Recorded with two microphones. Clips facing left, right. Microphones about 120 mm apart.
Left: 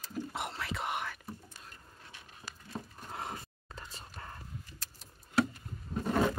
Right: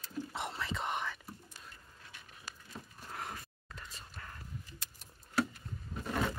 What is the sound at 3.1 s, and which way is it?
Whispering, 25° left (ahead or behind).